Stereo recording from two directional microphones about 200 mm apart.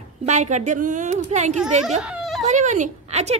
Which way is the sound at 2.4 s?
35° right (ahead or behind).